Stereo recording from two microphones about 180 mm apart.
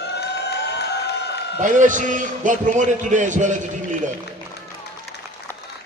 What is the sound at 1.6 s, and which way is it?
A man's voice, 45° right (ahead or behind).